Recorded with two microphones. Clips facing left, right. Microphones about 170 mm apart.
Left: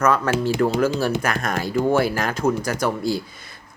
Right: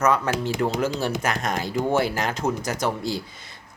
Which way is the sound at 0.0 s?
15° right (ahead or behind).